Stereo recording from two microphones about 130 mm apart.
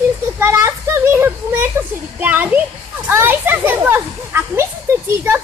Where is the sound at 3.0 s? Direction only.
15° right (ahead or behind).